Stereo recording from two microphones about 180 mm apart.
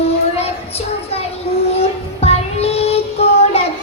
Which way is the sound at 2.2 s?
35° left (ahead or behind).